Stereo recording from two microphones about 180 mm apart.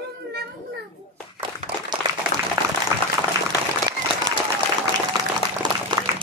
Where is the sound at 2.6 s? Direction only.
25° right (ahead or behind).